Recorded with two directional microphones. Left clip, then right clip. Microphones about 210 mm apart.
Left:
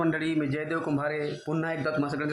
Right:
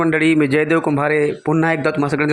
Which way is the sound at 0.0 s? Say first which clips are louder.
Right 12 dB; 25° right (ahead or behind).